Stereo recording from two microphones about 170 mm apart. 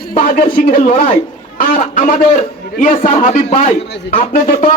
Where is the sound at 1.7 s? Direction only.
55° left (ahead or behind).